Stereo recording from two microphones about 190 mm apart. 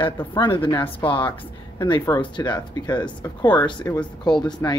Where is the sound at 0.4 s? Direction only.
25° left (ahead or behind).